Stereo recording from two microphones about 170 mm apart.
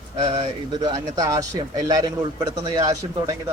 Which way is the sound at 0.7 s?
25° right (ahead or behind).